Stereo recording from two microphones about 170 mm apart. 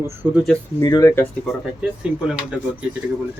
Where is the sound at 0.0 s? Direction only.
10° right (ahead or behind).